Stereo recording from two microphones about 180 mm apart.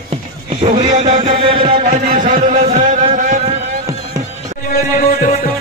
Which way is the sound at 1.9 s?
45° right (ahead or behind).